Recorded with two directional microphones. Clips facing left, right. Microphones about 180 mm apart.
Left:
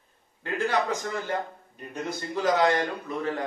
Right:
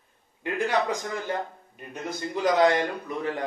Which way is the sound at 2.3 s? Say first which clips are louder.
Right 2 dB; 15° right (ahead or behind).